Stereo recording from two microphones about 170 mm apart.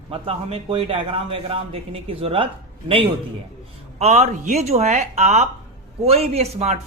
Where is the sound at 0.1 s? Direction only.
35° right (ahead or behind).